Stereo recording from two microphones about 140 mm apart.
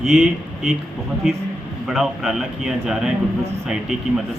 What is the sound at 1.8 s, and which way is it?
A man's voice, centre (ahead or behind).